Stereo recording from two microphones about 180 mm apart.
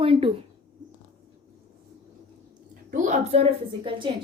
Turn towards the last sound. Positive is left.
turn(degrees=-30)  # may be behind; listen again after turning